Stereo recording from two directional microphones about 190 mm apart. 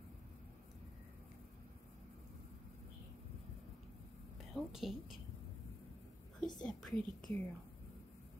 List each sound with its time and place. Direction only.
4.6 s speech: centre (ahead or behind)
6.6 s speech: 5° left (ahead or behind)